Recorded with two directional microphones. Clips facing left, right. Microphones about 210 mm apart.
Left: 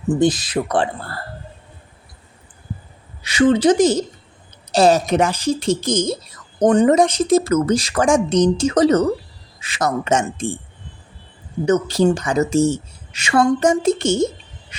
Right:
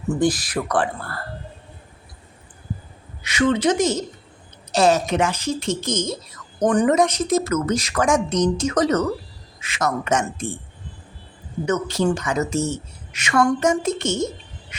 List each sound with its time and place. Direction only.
0.1 s speech: 25° left (ahead or behind)
3.2 s a woman's voice: 30° left (ahead or behind)
11.6 s a woman's voice: 30° left (ahead or behind)